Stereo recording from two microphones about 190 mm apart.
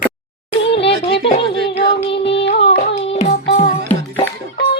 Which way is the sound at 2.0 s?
30° left (ahead or behind).